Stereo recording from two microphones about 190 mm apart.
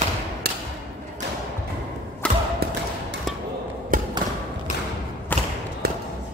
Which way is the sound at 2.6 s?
55° right (ahead or behind).